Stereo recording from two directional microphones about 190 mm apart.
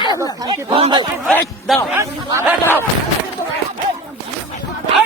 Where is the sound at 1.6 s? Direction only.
Centre (ahead or behind).